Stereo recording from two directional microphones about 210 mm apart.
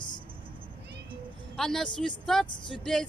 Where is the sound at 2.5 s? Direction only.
20° left (ahead or behind).